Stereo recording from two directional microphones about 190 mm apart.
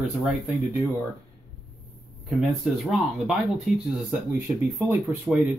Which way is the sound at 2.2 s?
5° right (ahead or behind).